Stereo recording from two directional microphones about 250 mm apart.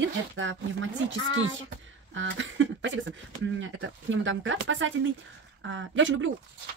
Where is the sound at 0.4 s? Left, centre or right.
Right.